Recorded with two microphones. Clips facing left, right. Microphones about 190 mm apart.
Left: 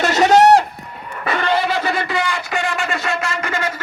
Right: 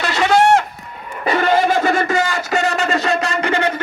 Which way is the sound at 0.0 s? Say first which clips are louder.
Left 3 dB; 40° left (ahead or behind).